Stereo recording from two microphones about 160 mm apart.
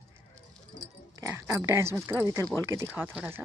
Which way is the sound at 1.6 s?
15° right (ahead or behind).